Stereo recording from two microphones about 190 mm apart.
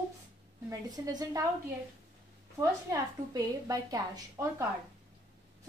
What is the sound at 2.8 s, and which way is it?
A woman's voice, 20° right (ahead or behind).